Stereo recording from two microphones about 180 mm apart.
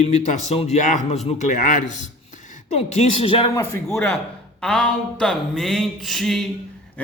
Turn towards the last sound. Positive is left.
turn(degrees=0)  # may be behind; listen again after turning